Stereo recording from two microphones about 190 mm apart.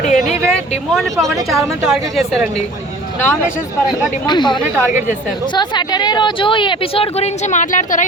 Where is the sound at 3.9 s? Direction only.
20° left (ahead or behind); by 8.1 s 40° left (ahead or behind).